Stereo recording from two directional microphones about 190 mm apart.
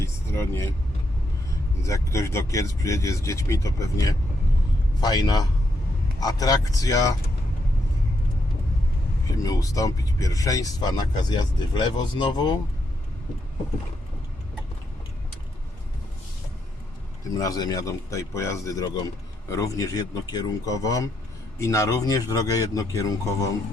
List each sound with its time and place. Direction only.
0.0 s speech: 15° left (ahead or behind)
1.8 s speech: 15° left (ahead or behind)
9.4 s speech: 20° left (ahead or behind)
17.3 s speech: 20° left (ahead or behind)